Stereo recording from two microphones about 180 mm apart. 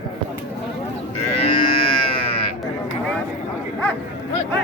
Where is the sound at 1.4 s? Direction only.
30° left (ahead or behind).